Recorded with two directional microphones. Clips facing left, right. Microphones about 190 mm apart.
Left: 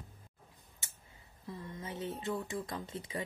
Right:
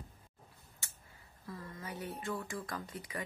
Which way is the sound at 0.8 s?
20° left (ahead or behind).